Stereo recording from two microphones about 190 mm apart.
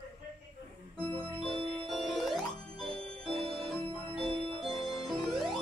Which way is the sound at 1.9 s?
Centre (ahead or behind).